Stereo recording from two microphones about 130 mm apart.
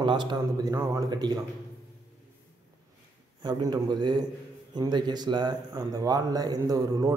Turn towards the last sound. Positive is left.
turn(degrees=-30)  # may be behind; listen again after turning